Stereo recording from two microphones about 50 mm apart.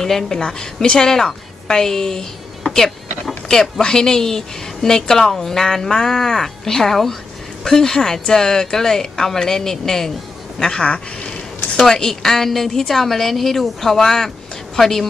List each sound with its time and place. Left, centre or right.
0.0 s a woman's voice: centre